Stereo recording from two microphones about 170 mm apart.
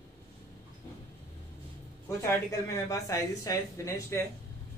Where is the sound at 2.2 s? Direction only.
20° left (ahead or behind).